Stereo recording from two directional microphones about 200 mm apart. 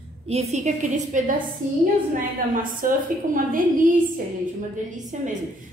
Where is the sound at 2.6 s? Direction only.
45° right (ahead or behind).